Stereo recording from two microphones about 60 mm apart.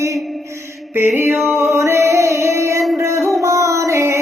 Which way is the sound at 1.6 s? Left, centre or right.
Right.